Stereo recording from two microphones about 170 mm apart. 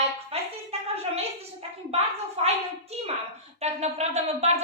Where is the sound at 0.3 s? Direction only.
35° right (ahead or behind).